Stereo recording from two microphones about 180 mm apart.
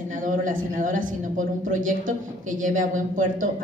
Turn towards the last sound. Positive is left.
turn(degrees=-45)  # may be behind; listen again after turning